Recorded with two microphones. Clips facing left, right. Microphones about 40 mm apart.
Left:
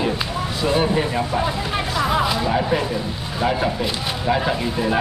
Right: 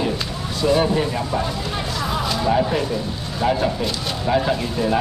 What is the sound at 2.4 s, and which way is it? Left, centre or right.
Speech, centre.